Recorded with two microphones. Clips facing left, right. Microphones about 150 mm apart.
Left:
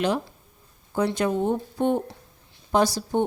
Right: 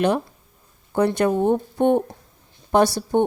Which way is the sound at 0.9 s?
55° right (ahead or behind).